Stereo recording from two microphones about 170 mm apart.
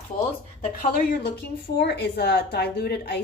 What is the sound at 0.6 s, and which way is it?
Speech, 40° left (ahead or behind).